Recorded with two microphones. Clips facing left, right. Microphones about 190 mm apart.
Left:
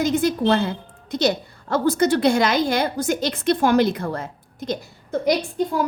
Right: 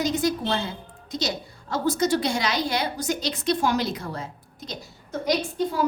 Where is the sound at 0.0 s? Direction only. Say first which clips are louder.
Left 5 dB; 55° left (ahead or behind).